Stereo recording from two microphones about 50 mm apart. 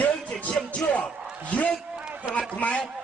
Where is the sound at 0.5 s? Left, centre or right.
Centre.